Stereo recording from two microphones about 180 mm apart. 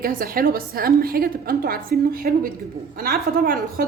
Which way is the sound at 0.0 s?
55° right (ahead or behind).